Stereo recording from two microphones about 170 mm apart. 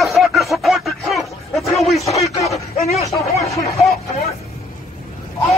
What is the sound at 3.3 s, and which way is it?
Speech, 40° left (ahead or behind).